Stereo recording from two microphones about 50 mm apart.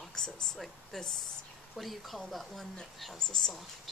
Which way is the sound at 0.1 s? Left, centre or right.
Centre.